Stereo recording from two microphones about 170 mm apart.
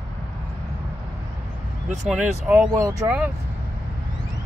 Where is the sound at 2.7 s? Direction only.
20° right (ahead or behind).